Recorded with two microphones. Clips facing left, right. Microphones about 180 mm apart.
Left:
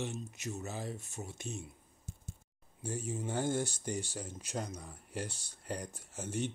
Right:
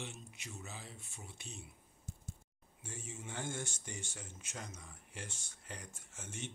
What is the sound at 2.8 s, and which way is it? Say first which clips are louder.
Speech: left 11 dB; 40° left (ahead or behind).